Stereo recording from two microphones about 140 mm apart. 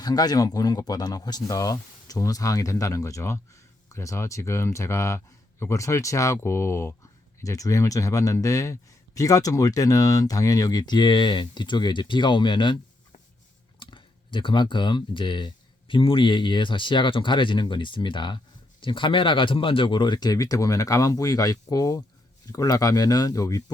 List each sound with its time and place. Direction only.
0.0 s speech: 30° left (ahead or behind)
13.7 s speech: 35° left (ahead or behind)